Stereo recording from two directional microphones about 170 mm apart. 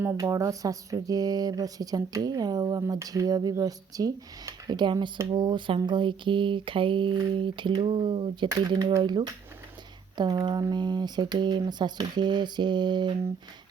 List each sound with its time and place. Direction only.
0.0 s speech: 15° right (ahead or behind)